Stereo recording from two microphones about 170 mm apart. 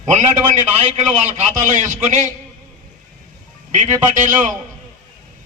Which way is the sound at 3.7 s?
45° right (ahead or behind).